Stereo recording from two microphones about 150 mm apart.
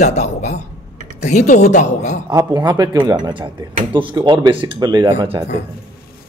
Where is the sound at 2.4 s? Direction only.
25° right (ahead or behind).